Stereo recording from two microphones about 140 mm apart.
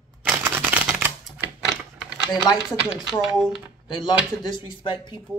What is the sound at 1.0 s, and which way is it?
Typing, 10° right (ahead or behind).